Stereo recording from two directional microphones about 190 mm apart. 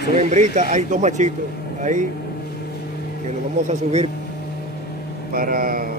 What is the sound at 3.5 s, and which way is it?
Speech, 35° right (ahead or behind).